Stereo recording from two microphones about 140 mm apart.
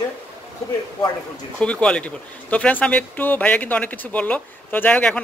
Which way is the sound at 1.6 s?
5° left (ahead or behind).